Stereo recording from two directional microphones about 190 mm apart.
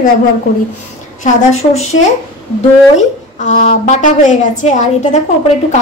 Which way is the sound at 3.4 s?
40° left (ahead or behind).